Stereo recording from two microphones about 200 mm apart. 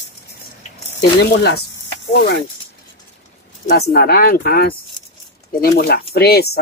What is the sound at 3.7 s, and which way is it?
Speech, 50° left (ahead or behind).